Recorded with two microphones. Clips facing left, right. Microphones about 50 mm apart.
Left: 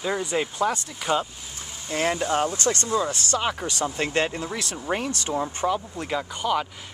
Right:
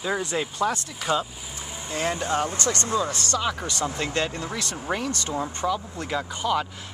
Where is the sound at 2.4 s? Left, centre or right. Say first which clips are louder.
Left 2 dB; right.